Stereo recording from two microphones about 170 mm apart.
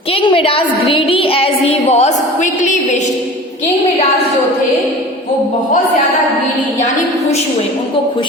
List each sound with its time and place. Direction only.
0.1 s a woman's voice: 30° left (ahead or behind); by 3.0 s 45° left (ahead or behind)